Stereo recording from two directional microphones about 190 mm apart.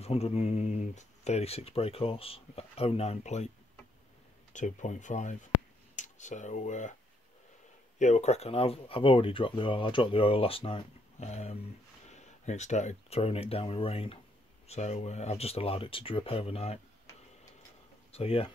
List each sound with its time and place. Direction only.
0.0 s speech: 30° left (ahead or behind)
4.5 s speech: 40° left (ahead or behind)
8.0 s speech: 35° left (ahead or behind)
18.1 s speech: 30° left (ahead or behind)